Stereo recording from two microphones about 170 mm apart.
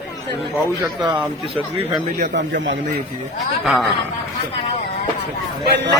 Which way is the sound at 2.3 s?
90° right.